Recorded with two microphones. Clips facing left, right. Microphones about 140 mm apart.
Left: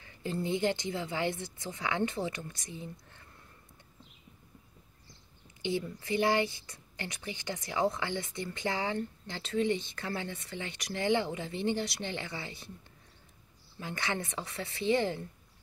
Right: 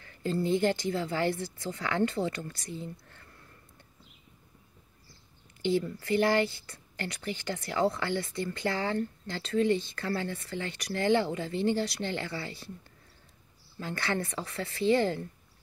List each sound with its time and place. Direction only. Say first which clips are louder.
0.0 s speech: right 4 dB; 20° left (ahead or behind)
5.6 s speech: right 5 dB; 15° left (ahead or behind)
13.7 s speech: right 3 dB; 20° left (ahead or behind)